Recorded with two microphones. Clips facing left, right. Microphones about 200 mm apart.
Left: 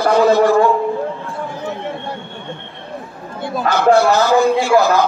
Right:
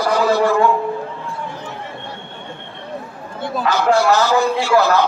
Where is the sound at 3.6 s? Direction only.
55° left (ahead or behind).